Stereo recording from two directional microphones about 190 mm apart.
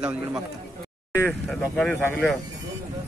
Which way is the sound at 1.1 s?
10° left (ahead or behind).